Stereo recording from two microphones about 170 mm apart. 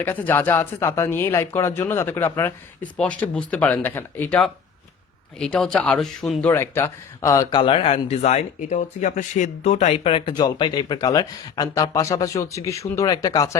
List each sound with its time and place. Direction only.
0.0 s speech: 10° left (ahead or behind)
6.5 s speech: 15° left (ahead or behind)